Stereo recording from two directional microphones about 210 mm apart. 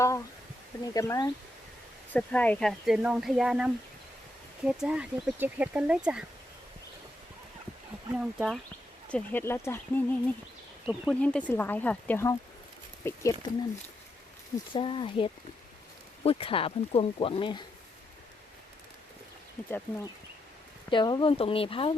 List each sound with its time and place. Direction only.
0.9 s speech: 15° left (ahead or behind); by 6.2 s 5° right (ahead or behind)
8.1 s speech: 5° right (ahead or behind)
9.0 s speech: 10° left (ahead or behind)
14.7 s speech: 25° left (ahead or behind)
20.9 s speech: 20° left (ahead or behind)